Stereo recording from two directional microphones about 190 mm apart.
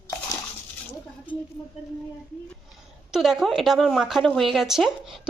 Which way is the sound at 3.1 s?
Centre (ahead or behind).